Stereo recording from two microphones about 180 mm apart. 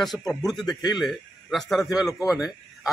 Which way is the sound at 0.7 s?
25° left (ahead or behind).